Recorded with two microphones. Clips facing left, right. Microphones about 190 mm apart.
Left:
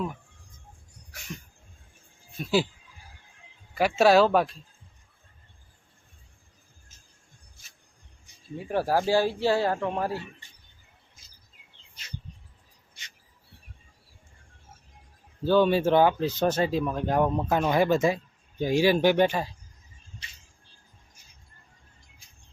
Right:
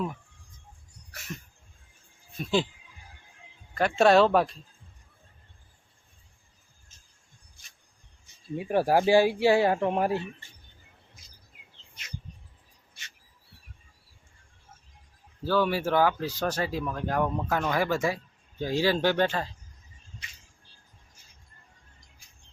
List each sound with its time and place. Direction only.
2.4 s speech: 5° left (ahead or behind)
3.8 s speech: 5° left (ahead or behind)
8.5 s speech: 15° right (ahead or behind)
12.9 s a sound: 15° left (ahead or behind)
15.4 s speech: 20° left (ahead or behind)